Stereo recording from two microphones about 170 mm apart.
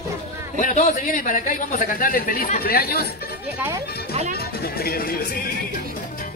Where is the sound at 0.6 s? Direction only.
45° left (ahead or behind); by 3.0 s 65° left (ahead or behind).